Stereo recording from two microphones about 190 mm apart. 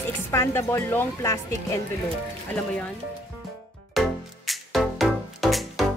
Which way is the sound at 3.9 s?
Centre (ahead or behind).